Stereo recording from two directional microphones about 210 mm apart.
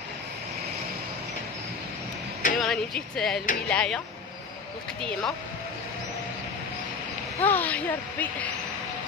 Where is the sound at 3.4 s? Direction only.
40° left (ahead or behind).